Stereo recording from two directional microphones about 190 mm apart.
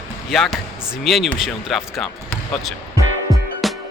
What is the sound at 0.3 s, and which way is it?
Speech, centre (ahead or behind).